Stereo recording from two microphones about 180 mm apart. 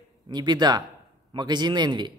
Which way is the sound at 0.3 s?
25° right (ahead or behind).